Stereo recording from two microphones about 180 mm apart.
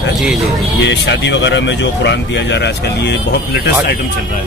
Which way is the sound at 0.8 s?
80° left.